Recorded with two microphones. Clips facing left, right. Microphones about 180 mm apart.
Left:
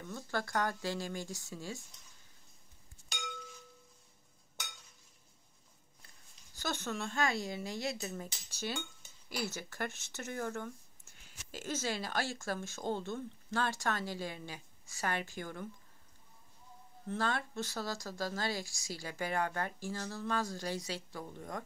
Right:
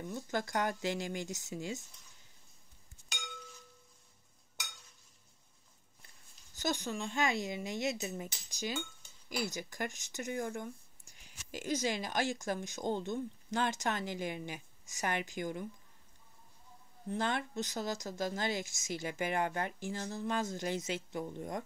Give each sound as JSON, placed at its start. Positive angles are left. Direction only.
{"t": 0.0, "sound": "speech", "side_deg": -20}
{"t": 6.6, "sound": "speech", "side_deg": -15}
{"t": 17.1, "sound": "speech", "side_deg": -20}